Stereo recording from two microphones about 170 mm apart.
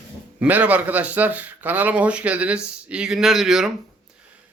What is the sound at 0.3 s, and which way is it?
A man's voice, 10° right (ahead or behind).